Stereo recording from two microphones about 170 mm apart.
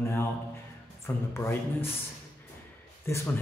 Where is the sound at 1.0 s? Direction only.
15° left (ahead or behind).